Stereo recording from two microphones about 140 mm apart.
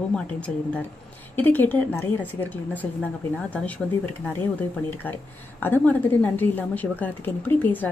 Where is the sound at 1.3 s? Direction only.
15° left (ahead or behind).